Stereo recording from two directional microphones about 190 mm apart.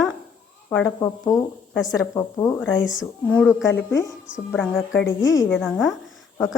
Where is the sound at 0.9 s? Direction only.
20° left (ahead or behind).